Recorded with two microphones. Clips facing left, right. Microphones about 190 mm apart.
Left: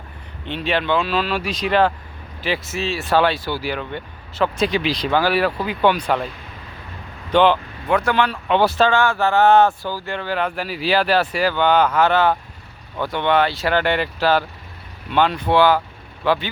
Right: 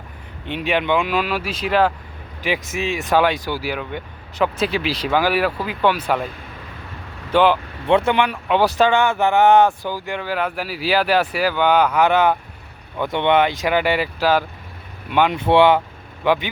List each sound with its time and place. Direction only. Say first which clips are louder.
0.4 s speech: right 1 dB; 10° right (ahead or behind)
7.3 s speech: even; 10° right (ahead or behind)
7.9 s speech: right 2 dB; 25° right (ahead or behind)
15.4 s speech: right 4 dB; 25° right (ahead or behind)